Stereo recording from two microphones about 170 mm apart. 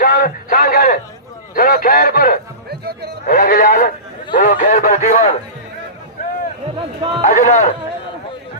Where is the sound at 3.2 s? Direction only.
55° left (ahead or behind).